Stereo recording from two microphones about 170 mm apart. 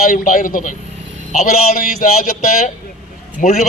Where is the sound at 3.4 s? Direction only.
55° left (ahead or behind).